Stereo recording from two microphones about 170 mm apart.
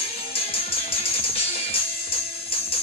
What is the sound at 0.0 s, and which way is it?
Music, 35° left (ahead or behind).